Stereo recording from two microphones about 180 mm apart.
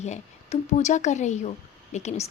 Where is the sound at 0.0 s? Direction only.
40° left (ahead or behind).